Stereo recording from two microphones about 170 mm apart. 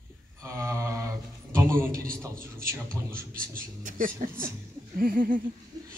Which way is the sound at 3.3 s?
55° right (ahead or behind).